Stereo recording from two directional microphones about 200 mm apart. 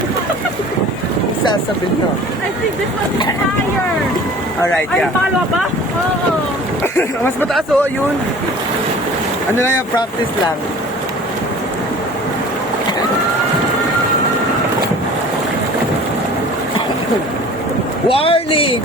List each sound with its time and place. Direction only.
18.1 s a man's voice: 30° left (ahead or behind)